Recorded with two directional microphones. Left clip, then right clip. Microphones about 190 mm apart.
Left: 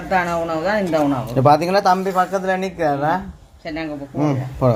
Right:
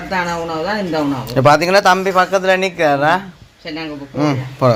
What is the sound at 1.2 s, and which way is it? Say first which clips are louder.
Speech: right 6 dB; centre (ahead or behind).